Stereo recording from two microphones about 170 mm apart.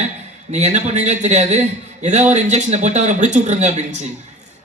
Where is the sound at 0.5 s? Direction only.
40° right (ahead or behind).